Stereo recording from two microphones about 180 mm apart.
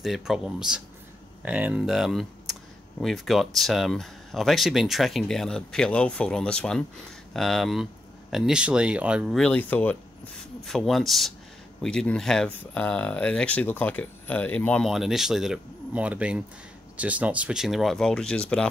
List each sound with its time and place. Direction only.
0.0 s speech: centre (ahead or behind)